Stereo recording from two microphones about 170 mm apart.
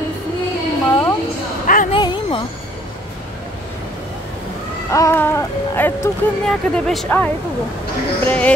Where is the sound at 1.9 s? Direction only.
30° left (ahead or behind).